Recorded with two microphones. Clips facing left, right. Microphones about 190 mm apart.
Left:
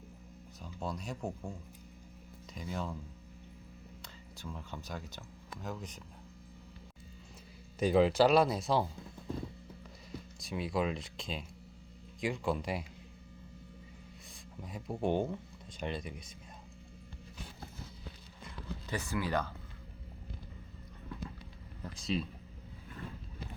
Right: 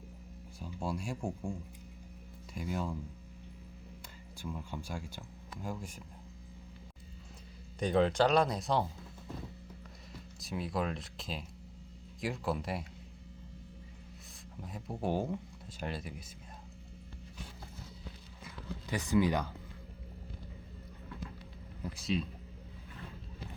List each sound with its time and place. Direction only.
0.6 s speech: 10° right (ahead or behind)
2.6 s speech: 10° right (ahead or behind)
4.4 s speech: 10° right (ahead or behind)
7.8 s speech: 5° left (ahead or behind)
10.1 s speech: centre (ahead or behind)
14.6 s speech: centre (ahead or behind)
18.9 s speech: 15° right (ahead or behind)
21.9 s speech: centre (ahead or behind)